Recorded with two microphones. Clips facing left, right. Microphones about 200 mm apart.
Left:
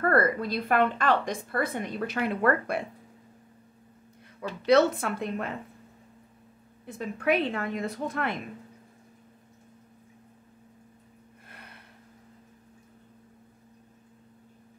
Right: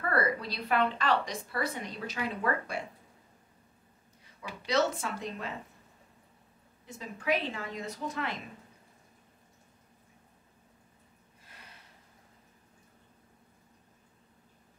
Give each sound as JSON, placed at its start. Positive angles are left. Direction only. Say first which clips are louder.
{"t": 0.0, "sound": "a woman's voice", "louder": "left 6 dB", "side_deg": 50}
{"t": 4.6, "sound": "a woman's voice", "louder": "left 8 dB", "side_deg": 60}
{"t": 6.9, "sound": "a woman's voice", "louder": "left 5 dB", "side_deg": 60}
{"t": 11.4, "sound": "a sound", "louder": "left 5 dB", "side_deg": 60}